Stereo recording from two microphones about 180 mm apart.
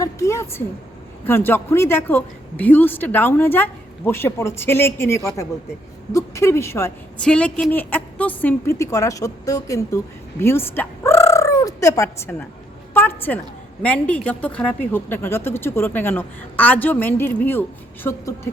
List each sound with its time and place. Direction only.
0.0 s a woman's voice: 15° left (ahead or behind)
10.4 s turkey: 15° left (ahead or behind)
12.9 s speech: 10° left (ahead or behind)